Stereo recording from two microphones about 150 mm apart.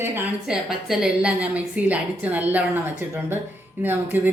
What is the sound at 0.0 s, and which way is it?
Speech, 15° right (ahead or behind).